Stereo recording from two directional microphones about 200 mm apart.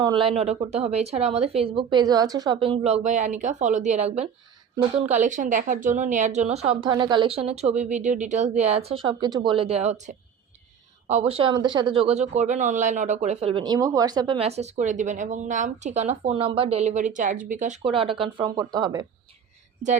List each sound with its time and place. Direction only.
0.0 s a woman's voice: 25° right (ahead or behind)